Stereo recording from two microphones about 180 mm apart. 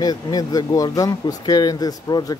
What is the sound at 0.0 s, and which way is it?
Speech, 20° left (ahead or behind).